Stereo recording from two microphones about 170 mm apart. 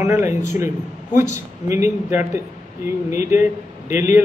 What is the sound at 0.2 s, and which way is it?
A man's voice, 15° right (ahead or behind).